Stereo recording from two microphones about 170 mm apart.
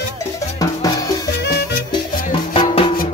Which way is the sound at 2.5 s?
30° left (ahead or behind).